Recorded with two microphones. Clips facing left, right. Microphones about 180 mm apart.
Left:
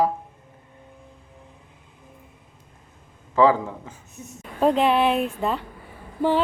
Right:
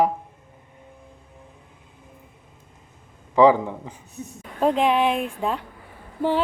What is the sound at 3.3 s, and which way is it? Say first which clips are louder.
Speech: right 3 dB; 15° right (ahead or behind).